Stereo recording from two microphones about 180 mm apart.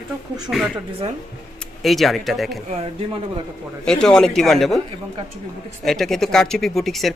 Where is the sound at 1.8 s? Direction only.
Centre (ahead or behind).